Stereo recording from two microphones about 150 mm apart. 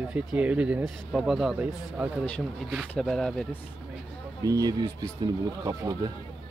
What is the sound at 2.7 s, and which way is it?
Speech, centre (ahead or behind).